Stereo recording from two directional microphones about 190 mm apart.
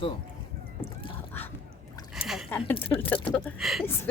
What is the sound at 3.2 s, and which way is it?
Speech, centre (ahead or behind).